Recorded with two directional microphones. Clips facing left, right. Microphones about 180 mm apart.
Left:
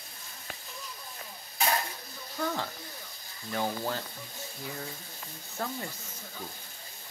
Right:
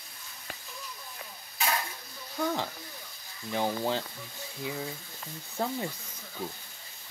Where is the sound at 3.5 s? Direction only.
20° right (ahead or behind).